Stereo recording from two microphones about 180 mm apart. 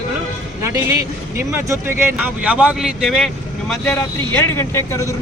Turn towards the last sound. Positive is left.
turn(degrees=15)  # may be behind; listen again after turning